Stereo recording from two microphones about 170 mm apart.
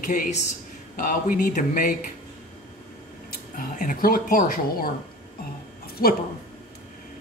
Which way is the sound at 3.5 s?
55° left (ahead or behind).